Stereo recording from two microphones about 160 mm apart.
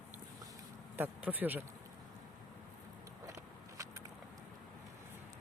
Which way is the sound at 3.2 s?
20° right (ahead or behind).